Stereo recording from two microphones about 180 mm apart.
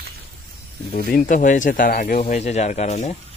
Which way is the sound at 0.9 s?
50° left (ahead or behind).